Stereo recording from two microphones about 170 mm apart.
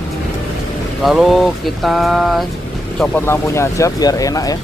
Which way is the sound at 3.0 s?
10° left (ahead or behind).